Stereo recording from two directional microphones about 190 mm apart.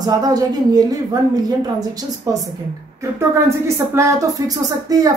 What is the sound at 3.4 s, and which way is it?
A woman's voice, 15° right (ahead or behind).